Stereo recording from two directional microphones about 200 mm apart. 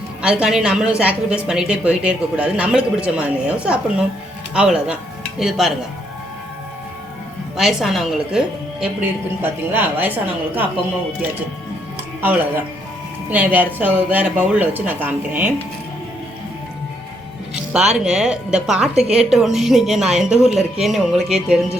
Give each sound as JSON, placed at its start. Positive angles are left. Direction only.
{"t": 0.2, "sound": "a woman's voice", "side_deg": -5}
{"t": 7.5, "sound": "a woman's voice", "side_deg": 0}
{"t": 12.2, "sound": "a woman's voice", "side_deg": -10}
{"t": 17.5, "sound": "a woman's voice", "side_deg": -5}